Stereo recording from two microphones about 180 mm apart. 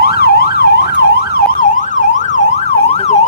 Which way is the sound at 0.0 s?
60° left (ahead or behind).